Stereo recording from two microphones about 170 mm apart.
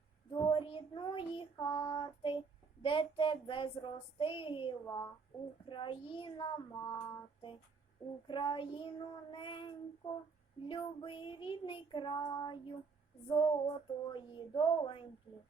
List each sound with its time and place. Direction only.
0.4 s child singing: 30° left (ahead or behind)
8.3 s child singing: 30° left (ahead or behind)